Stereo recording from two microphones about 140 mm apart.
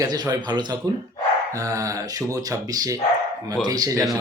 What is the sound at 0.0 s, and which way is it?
Speech, 25° right (ahead or behind).